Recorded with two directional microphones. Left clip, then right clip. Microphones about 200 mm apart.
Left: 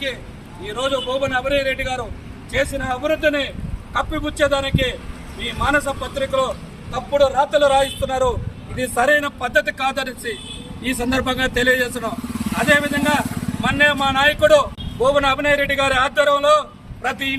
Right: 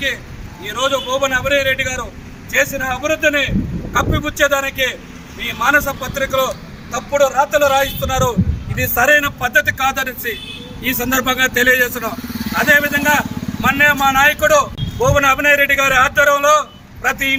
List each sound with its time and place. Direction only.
0.6 s speech: centre (ahead or behind)